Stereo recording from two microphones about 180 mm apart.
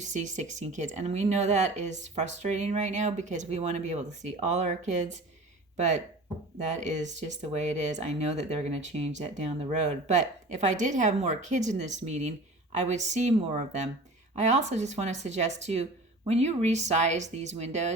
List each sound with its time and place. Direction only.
0.0 s speech: 40° right (ahead or behind)